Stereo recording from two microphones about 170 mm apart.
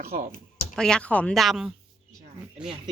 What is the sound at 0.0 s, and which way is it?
Speech, 60° right (ahead or behind).